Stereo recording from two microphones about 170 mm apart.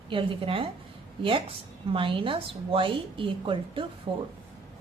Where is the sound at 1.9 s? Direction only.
30° right (ahead or behind).